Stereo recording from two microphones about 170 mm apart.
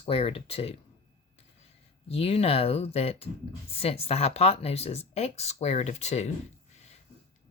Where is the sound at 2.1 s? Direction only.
35° left (ahead or behind).